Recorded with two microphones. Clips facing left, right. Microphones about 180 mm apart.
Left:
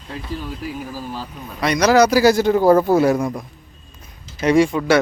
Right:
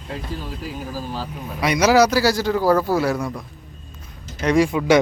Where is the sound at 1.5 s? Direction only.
10° right (ahead or behind).